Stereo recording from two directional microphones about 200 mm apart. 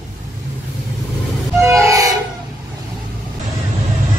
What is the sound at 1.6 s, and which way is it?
Train, 15° right (ahead or behind).